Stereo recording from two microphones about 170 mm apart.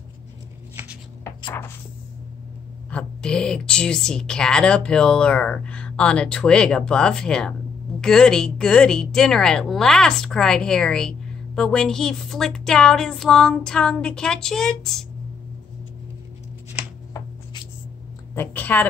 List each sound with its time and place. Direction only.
1.2 s a sound: 15° left (ahead or behind)
2.9 s a woman's voice: 5° left (ahead or behind)
18.3 s a woman's voice: 10° left (ahead or behind)